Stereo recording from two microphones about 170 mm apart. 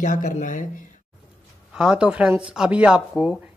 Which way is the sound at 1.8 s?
5° right (ahead or behind).